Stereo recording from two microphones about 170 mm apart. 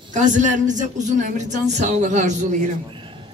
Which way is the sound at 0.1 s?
45° right (ahead or behind).